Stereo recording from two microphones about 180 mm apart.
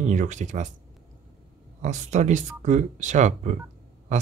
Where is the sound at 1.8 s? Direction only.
40° right (ahead or behind).